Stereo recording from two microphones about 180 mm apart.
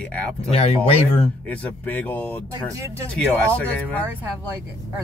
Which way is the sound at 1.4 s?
10° left (ahead or behind).